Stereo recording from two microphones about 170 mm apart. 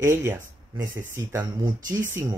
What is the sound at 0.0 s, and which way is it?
Speech, 15° right (ahead or behind).